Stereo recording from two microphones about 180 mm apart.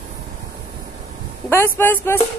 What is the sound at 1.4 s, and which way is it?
Speech, 15° left (ahead or behind).